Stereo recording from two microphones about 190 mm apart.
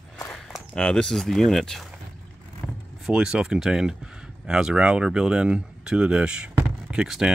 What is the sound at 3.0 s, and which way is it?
Speech, 5° right (ahead or behind).